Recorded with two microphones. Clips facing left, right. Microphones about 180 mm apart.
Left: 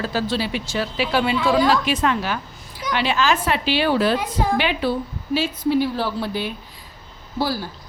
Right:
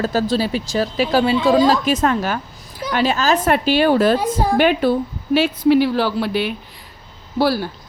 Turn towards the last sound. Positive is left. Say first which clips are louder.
# right 6 dB
turn(degrees=-70)  # may be behind; listen again after turning